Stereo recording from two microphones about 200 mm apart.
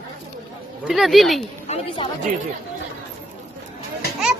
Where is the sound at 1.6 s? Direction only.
30° left (ahead or behind).